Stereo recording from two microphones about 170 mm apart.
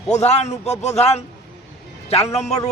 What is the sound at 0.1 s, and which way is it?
A man's voice, 40° left (ahead or behind).